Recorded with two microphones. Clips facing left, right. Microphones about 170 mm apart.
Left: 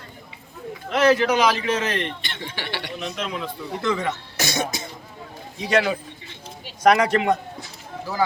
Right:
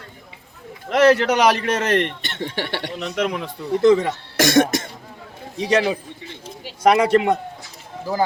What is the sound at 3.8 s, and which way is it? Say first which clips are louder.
Speech: right 10 dB; 35° right (ahead or behind).